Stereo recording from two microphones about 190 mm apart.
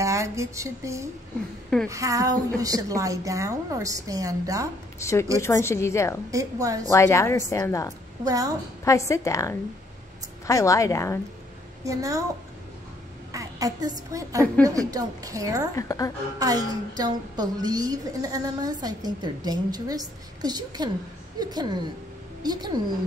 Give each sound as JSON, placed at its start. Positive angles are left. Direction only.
{"t": 0.0, "sound": "a sound", "side_deg": -15}
{"t": 1.9, "sound": "a woman's voice", "side_deg": -15}
{"t": 4.9, "sound": "speech", "side_deg": 15}
{"t": 6.3, "sound": "a woman's voice", "side_deg": -15}
{"t": 6.9, "sound": "speech", "side_deg": 15}
{"t": 8.2, "sound": "a woman's voice", "side_deg": -20}
{"t": 8.8, "sound": "speech", "side_deg": 15}
{"t": 11.8, "sound": "a woman's voice", "side_deg": -15}
{"t": 13.3, "sound": "a woman's voice", "side_deg": -15}
{"t": 15.7, "sound": "speech", "side_deg": 15}
{"t": 16.3, "sound": "a woman's voice", "side_deg": -20}